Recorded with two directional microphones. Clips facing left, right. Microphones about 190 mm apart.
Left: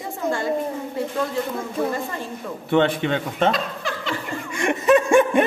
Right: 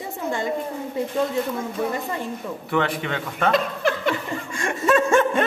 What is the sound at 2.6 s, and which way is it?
Speech, 25° left (ahead or behind).